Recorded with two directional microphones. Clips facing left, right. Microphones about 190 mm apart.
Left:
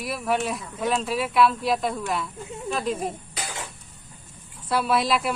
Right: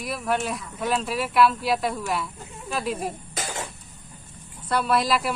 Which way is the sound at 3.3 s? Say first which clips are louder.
Right 3 dB; 45° right (ahead or behind).